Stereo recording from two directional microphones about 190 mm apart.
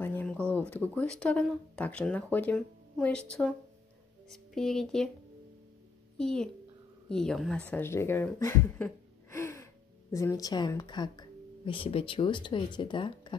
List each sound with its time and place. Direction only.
0.0 s a sound: 10° left (ahead or behind)
0.9 s speech: 5° left (ahead or behind)
6.1 s a child's voice: 5° left (ahead or behind)
9.3 s gasp: 15° left (ahead or behind)
10.1 s a woman's voice: 15° left (ahead or behind)